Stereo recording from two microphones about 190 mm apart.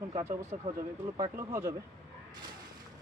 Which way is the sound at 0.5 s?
40° right (ahead or behind).